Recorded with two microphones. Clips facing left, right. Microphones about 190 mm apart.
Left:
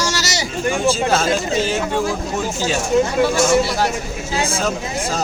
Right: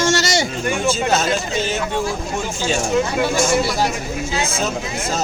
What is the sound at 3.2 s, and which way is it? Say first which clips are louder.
Speech: left 2 dB; 15° right (ahead or behind).